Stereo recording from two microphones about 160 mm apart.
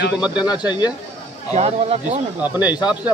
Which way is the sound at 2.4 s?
10° right (ahead or behind).